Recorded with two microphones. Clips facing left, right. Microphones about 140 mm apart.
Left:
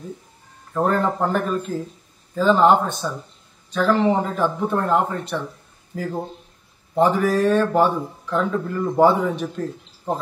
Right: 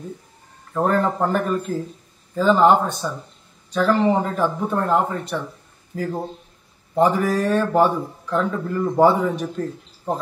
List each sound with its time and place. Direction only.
0.7 s speech: centre (ahead or behind)